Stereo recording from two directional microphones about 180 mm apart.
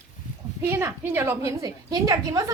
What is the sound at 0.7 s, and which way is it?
A woman's voice, 15° right (ahead or behind).